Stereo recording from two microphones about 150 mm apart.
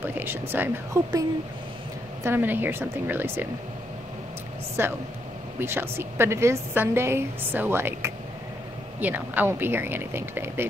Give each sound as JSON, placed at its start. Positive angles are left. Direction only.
{"t": 0.0, "sound": "a woman's voice", "side_deg": -15}
{"t": 2.2, "sound": "a woman's voice", "side_deg": -15}
{"t": 4.8, "sound": "a woman's voice", "side_deg": -15}